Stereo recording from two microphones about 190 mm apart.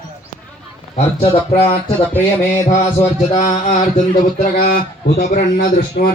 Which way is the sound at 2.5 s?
40° left (ahead or behind).